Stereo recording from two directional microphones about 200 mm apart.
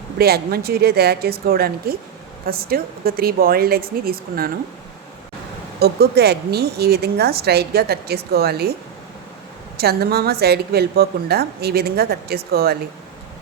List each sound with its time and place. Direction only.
0.2 s a woman's voice: 50° right (ahead or behind)
5.8 s a woman's voice: 55° right (ahead or behind)
9.8 s a woman's voice: 50° right (ahead or behind)